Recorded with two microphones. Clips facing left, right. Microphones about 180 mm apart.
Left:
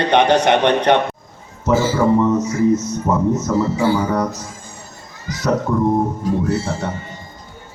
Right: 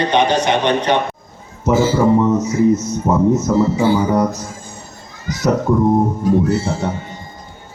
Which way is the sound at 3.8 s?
20° right (ahead or behind).